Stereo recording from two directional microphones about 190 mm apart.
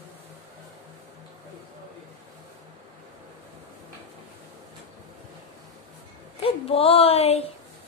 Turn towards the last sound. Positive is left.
turn(degrees=30)  # may be behind; listen again after turning